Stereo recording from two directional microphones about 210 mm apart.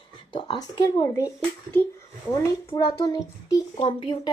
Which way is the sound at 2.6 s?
15° left (ahead or behind).